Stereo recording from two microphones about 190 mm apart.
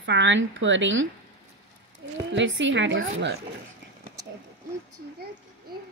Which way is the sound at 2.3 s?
75° right (ahead or behind).